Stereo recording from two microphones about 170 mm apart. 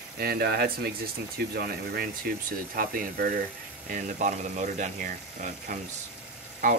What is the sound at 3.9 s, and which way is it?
Speech, 45° right (ahead or behind).